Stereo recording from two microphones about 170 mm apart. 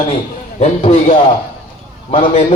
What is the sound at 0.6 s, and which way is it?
A man's voice, 40° left (ahead or behind).